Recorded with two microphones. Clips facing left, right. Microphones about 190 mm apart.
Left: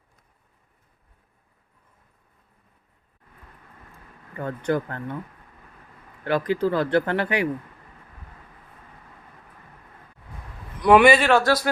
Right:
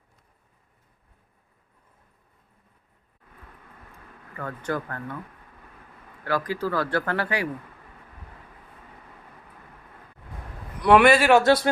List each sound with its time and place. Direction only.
4.4 s speech: 25° left (ahead or behind)
6.2 s speech: 20° left (ahead or behind)
10.8 s speech: centre (ahead or behind)
11.3 s speech: 20° right (ahead or behind)